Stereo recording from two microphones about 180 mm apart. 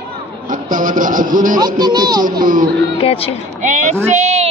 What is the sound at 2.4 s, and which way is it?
Speech, 50° right (ahead or behind).